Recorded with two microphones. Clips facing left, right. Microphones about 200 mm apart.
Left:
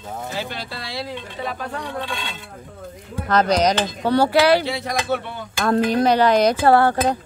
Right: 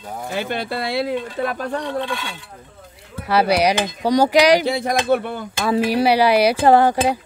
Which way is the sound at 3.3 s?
10° right (ahead or behind).